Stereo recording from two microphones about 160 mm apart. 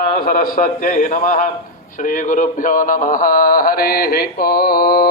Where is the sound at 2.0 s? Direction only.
55° left (ahead or behind).